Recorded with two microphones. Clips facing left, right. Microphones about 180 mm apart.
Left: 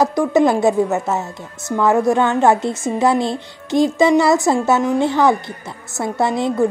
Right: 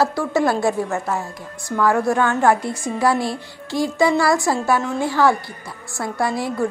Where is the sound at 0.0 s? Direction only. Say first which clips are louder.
Left 4 dB; 20° left (ahead or behind).